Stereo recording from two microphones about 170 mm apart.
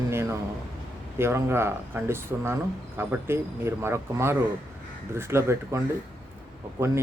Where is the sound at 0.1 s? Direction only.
15° right (ahead or behind).